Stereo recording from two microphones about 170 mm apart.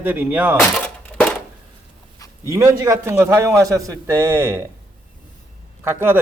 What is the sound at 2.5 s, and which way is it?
Speech, 20° right (ahead or behind).